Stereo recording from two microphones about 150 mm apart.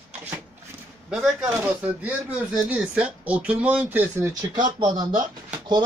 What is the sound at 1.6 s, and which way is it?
Speech, 10° right (ahead or behind).